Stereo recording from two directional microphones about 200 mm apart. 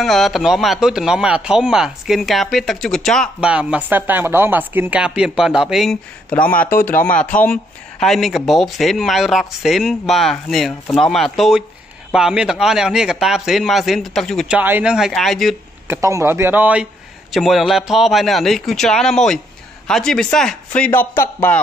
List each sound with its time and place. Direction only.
0.0 s speech: centre (ahead or behind)
15.9 s a man's voice: 15° right (ahead or behind); by 21.5 s 10° left (ahead or behind)